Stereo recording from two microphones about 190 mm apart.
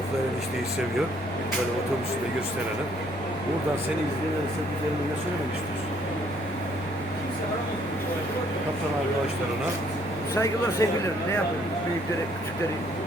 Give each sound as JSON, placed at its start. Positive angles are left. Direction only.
{"t": 10.3, "sound": "speech", "side_deg": 15}